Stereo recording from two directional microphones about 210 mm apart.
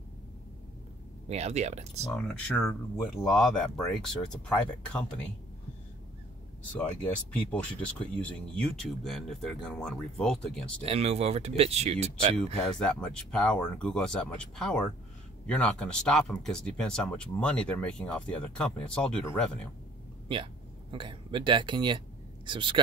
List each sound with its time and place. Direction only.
1.3 s speech: 30° right (ahead or behind)
2.1 s speech: 5° left (ahead or behind)
6.7 s speech: 5° left (ahead or behind)
10.9 s speech: 30° right (ahead or behind)
12.7 s speech: 5° left (ahead or behind)
20.9 s speech: 25° right (ahead or behind)